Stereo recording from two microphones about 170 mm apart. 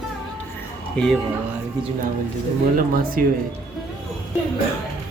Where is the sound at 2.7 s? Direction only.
55° right (ahead or behind).